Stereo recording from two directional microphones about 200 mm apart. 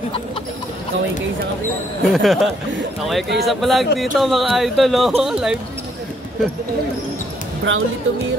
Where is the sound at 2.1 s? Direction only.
Centre (ahead or behind).